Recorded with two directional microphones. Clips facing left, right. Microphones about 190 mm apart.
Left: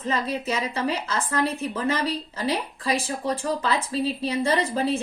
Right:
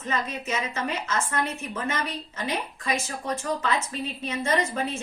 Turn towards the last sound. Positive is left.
turn(degrees=35)  # may be behind; listen again after turning